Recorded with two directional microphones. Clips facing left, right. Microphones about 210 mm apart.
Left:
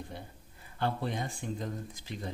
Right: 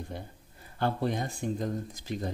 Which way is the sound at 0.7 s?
45° right (ahead or behind).